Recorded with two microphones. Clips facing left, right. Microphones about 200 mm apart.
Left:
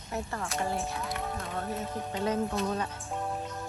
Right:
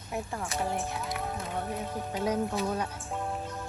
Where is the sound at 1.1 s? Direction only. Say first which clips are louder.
Even; centre (ahead or behind).